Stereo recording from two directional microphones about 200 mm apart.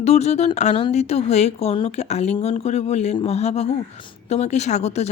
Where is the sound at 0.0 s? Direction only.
30° left (ahead or behind).